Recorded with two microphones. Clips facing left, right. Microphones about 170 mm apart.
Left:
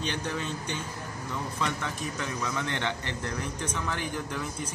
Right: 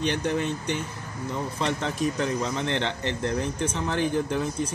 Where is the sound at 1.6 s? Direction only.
25° right (ahead or behind).